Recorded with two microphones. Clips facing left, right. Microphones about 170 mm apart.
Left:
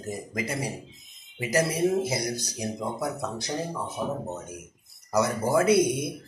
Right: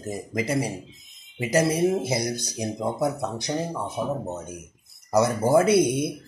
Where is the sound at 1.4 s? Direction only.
25° right (ahead or behind).